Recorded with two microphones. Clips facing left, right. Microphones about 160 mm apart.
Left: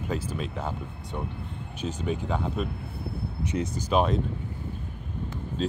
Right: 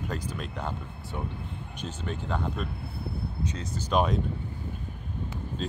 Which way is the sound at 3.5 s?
20° left (ahead or behind).